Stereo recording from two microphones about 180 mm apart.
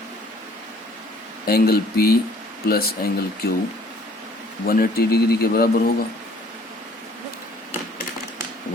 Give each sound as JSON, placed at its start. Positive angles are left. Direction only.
{"t": 1.5, "sound": "a man's voice", "side_deg": 60}
{"t": 4.6, "sound": "a man's voice", "side_deg": 55}